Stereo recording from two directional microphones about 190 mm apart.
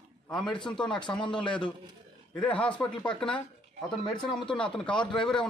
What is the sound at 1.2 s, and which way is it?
Speech, 25° left (ahead or behind).